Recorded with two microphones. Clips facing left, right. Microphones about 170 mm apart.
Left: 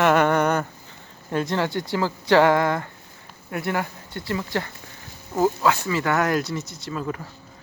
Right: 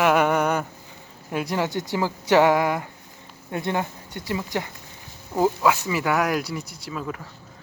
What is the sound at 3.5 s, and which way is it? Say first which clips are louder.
Speech: even; 25° right (ahead or behind).